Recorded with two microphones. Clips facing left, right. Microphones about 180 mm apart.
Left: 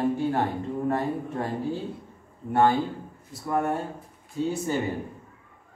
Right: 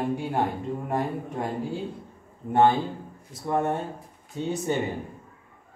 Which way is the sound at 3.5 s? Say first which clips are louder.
Right 1 dB; 20° right (ahead or behind).